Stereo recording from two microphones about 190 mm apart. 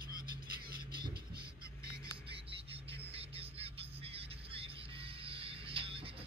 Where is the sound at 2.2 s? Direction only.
30° right (ahead or behind).